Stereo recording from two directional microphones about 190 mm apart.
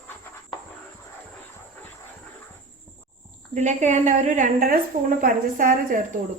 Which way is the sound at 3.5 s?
40° right (ahead or behind).